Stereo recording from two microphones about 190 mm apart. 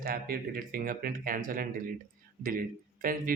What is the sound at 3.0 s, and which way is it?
Speech, 45° right (ahead or behind).